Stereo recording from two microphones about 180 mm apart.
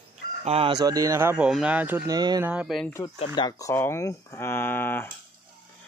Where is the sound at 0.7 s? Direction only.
20° right (ahead or behind).